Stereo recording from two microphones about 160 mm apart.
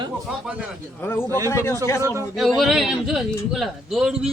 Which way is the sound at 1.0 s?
15° left (ahead or behind).